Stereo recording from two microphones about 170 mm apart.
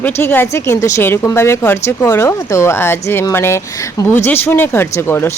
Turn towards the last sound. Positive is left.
turn(degrees=15)  # may be behind; listen again after turning